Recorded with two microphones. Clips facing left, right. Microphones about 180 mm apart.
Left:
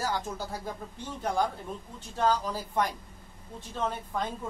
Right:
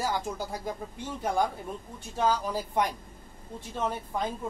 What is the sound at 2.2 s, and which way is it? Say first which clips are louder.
Speech: even; 10° right (ahead or behind).